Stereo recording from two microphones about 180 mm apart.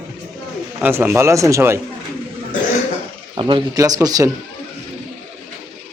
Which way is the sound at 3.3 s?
25° right (ahead or behind).